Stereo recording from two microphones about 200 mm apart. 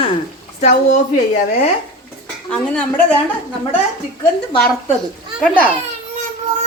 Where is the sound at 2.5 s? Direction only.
5° left (ahead or behind).